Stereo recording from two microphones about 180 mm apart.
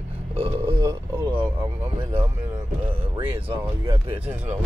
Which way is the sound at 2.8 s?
25° right (ahead or behind).